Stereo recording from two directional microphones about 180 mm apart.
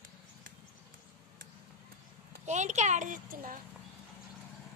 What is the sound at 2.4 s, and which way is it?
A child's voice, 40° right (ahead or behind).